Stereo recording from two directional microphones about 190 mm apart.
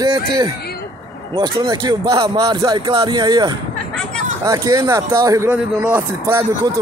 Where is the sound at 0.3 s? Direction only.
20° right (ahead or behind).